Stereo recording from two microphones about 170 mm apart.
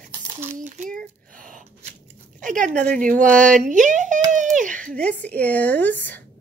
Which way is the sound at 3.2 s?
50° right (ahead or behind).